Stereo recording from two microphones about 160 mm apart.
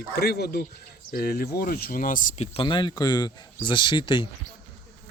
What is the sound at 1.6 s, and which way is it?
Speech, 70° left (ahead or behind).